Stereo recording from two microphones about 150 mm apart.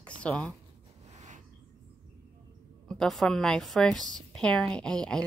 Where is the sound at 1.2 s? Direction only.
55° right (ahead or behind).